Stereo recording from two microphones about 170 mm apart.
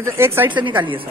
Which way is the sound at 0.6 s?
30° right (ahead or behind).